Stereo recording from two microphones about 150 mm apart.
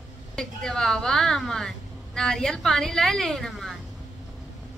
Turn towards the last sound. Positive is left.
turn(degrees=5)  # may be behind; listen again after turning